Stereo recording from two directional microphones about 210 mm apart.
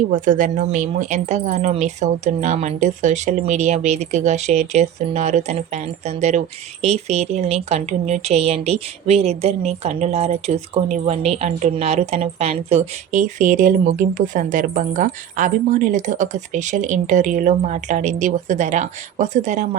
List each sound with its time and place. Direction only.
0.1 s a woman's voice: 40° right (ahead or behind)